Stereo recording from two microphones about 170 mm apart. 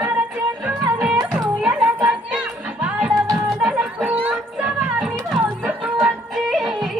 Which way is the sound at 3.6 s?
5° right (ahead or behind).